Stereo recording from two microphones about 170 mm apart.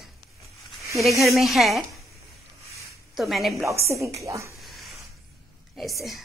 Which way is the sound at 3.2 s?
Centre (ahead or behind).